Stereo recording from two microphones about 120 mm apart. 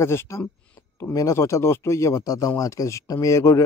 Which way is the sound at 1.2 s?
25° left (ahead or behind).